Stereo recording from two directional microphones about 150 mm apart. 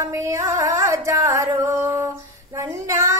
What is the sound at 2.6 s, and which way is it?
Child singing, 20° right (ahead or behind).